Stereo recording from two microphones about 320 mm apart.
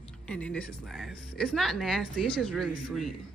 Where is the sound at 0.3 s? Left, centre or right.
Centre.